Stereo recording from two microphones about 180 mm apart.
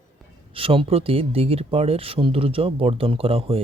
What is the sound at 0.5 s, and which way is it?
Speech, 30° right (ahead or behind).